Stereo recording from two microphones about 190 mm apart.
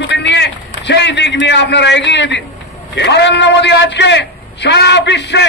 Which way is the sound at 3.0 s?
65° left (ahead or behind).